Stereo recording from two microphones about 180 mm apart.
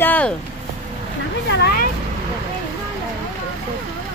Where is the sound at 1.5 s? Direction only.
65° left (ahead or behind).